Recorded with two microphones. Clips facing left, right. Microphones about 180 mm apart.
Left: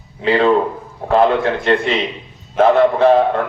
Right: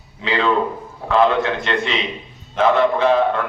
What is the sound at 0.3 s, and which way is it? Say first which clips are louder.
Speech: left 6 dB; 45° left (ahead or behind).